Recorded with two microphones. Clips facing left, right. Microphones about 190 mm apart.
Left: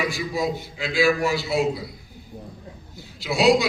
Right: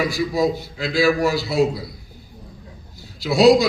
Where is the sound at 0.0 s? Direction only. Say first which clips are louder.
Right 5 dB; 40° right (ahead or behind).